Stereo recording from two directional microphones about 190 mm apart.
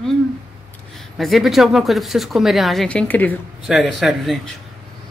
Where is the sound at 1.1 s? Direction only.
Centre (ahead or behind).